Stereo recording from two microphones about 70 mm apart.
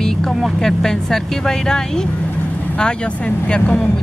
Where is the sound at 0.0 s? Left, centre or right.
Centre.